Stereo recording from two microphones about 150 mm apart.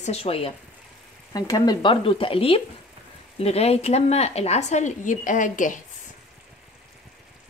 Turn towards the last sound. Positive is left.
turn(degrees=60)  # may be behind; listen again after turning